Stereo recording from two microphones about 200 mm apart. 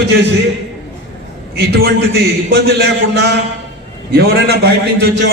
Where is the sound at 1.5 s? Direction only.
55° right (ahead or behind).